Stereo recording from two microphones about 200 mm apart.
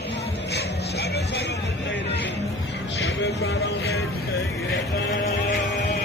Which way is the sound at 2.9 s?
65° left (ahead or behind).